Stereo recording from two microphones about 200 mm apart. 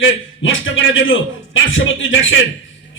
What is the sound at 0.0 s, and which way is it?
Speech, 70° left (ahead or behind).